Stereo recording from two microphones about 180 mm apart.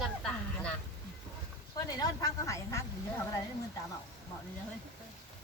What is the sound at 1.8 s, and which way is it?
Speech, 20° left (ahead or behind).